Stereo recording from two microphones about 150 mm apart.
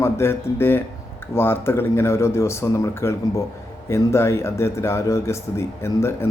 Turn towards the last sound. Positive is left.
turn(degrees=15)  # may be behind; listen again after turning